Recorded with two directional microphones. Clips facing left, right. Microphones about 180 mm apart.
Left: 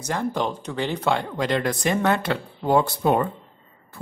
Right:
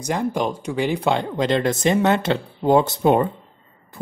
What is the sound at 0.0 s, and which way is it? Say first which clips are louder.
Speech: right 3 dB; 15° right (ahead or behind).